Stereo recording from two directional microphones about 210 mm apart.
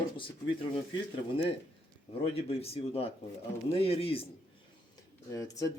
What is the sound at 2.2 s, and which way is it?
Speech, 30° left (ahead or behind).